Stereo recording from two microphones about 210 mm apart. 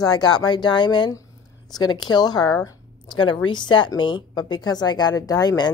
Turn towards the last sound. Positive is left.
turn(degrees=20)  # may be behind; listen again after turning